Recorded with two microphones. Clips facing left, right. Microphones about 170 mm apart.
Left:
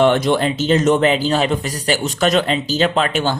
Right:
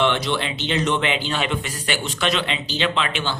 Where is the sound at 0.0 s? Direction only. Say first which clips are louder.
Left 7 dB; 45° left (ahead or behind).